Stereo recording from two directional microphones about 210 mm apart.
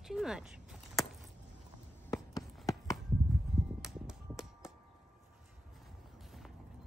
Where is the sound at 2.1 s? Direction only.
15° left (ahead or behind).